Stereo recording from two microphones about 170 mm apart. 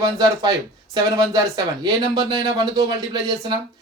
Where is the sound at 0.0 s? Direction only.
20° right (ahead or behind).